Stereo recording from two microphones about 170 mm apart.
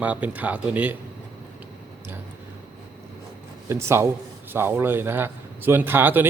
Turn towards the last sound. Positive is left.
turn(degrees=-10)  # may be behind; listen again after turning